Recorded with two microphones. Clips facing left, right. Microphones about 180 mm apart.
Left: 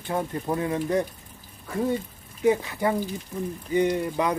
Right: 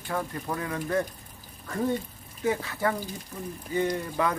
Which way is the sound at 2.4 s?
15° left (ahead or behind).